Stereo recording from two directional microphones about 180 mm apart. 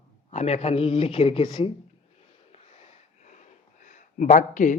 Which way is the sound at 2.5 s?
35° left (ahead or behind).